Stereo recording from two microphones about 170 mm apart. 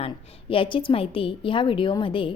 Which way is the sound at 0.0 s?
35° left (ahead or behind).